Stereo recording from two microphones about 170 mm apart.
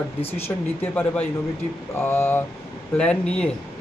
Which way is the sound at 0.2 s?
35° left (ahead or behind).